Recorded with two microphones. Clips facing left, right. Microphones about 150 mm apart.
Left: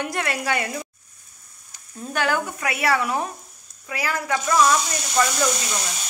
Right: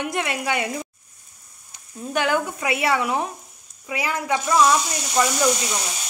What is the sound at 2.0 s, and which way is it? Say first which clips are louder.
Speech: right 2 dB; 20° right (ahead or behind).